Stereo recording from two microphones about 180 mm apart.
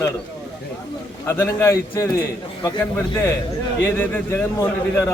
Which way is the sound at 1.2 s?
15° left (ahead or behind).